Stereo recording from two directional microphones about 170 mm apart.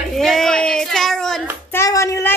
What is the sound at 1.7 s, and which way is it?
Speech, 15° left (ahead or behind).